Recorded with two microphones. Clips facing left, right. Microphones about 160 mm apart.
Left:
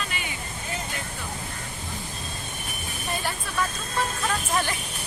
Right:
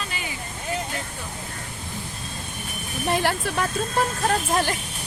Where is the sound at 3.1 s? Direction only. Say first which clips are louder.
Right 8 dB; 80° right.